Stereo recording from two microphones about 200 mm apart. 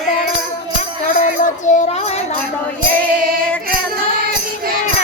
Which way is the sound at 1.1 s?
40° left (ahead or behind).